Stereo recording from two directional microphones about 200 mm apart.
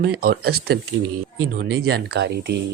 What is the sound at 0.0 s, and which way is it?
Speech, 50° right (ahead or behind).